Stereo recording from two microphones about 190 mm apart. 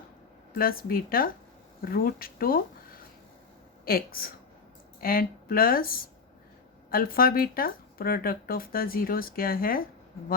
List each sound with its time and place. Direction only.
0.5 s speech: 50° left (ahead or behind)
3.8 s speech: 50° left (ahead or behind)